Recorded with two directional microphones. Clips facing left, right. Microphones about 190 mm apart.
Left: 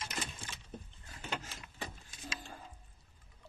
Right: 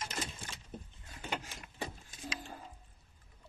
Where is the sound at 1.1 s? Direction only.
10° right (ahead or behind).